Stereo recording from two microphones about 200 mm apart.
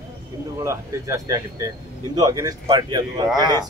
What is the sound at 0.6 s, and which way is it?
Speech, 15° right (ahead or behind).